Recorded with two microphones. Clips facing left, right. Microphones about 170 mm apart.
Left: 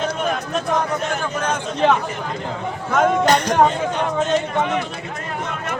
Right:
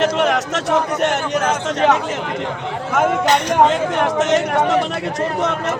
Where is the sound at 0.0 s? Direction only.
90° right.